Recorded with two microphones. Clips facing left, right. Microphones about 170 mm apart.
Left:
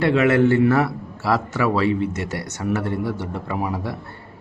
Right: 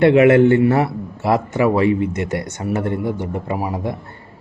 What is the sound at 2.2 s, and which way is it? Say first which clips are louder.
Speech: right 5 dB; 55° right (ahead or behind).